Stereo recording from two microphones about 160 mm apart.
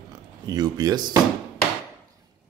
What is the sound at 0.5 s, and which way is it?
Speech, 25° right (ahead or behind).